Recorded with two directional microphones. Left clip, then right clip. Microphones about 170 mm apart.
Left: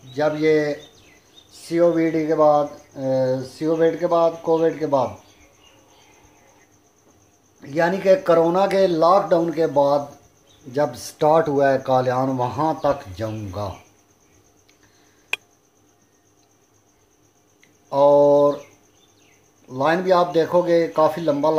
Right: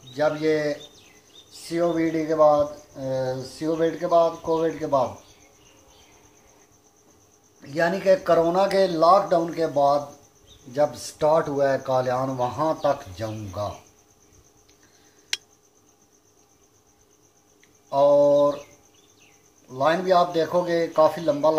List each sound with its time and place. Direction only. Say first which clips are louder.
0.1 s speech: left 4 dB; 50° left (ahead or behind)
7.6 s speech: left 3 dB; 45° left (ahead or behind)
17.8 s speech: left 3 dB; 55° left (ahead or behind)
19.7 s speech: left 2 dB; 55° left (ahead or behind)